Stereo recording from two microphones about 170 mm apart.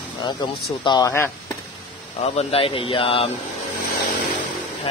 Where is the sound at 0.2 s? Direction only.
25° left (ahead or behind).